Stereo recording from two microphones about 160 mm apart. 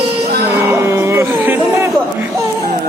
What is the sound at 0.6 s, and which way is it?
Music, 15° right (ahead or behind).